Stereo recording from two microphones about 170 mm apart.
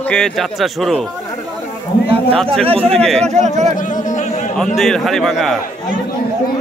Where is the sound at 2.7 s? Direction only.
35° right (ahead or behind).